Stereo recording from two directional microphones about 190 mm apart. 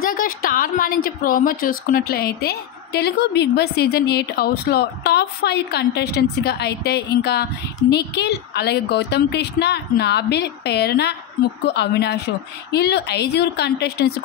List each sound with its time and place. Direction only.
0.0 s speech: 50° left (ahead or behind)